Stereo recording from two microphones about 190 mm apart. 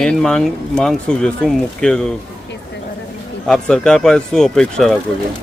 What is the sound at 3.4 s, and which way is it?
Speech, centre (ahead or behind).